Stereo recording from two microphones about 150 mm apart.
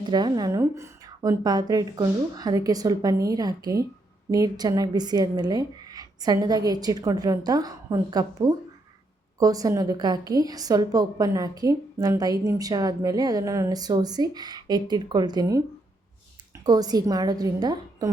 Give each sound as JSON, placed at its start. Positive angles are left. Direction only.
{"t": 0.0, "sound": "a woman's voice", "side_deg": -30}
{"t": 16.6, "sound": "a woman's voice", "side_deg": -25}